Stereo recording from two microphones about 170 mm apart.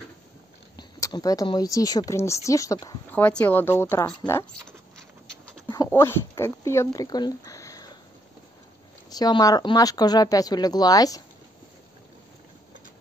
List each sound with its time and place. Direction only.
0.7 s speech: 20° left (ahead or behind)
5.7 s speech: 20° left (ahead or behind)
9.1 s speech: 25° left (ahead or behind)